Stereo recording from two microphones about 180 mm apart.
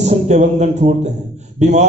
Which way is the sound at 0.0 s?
40° right (ahead or behind).